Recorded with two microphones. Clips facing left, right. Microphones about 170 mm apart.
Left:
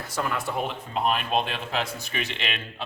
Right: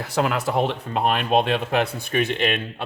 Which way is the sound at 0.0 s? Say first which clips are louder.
Right 6 dB; 80° right.